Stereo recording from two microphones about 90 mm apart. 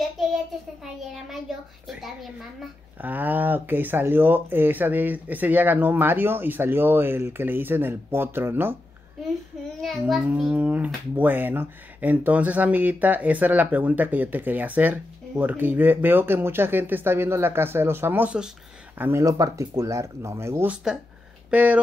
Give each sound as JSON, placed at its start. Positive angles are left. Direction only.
{"t": 3.0, "sound": "speech", "side_deg": -20}
{"t": 9.8, "sound": "a child's voice", "side_deg": 5}
{"t": 10.1, "sound": "speech", "side_deg": -10}
{"t": 19.2, "sound": "speech", "side_deg": -40}
{"t": 20.9, "sound": "speech", "side_deg": -5}